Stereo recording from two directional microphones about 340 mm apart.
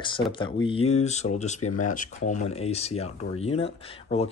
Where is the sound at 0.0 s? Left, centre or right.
Centre.